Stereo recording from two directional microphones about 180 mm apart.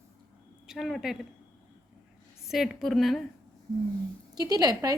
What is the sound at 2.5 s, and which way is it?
Speech, centre (ahead or behind).